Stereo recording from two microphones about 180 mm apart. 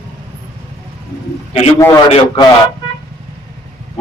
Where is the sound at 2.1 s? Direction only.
25° left (ahead or behind).